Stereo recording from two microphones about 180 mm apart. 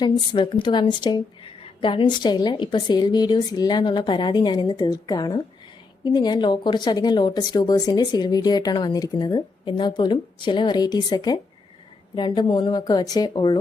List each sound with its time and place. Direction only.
0.0 s speech: 25° left (ahead or behind)